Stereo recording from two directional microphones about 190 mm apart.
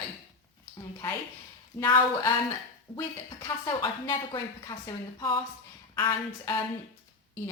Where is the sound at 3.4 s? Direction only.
20° left (ahead or behind).